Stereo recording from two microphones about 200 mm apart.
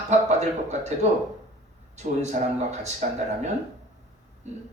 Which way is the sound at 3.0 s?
40° right (ahead or behind).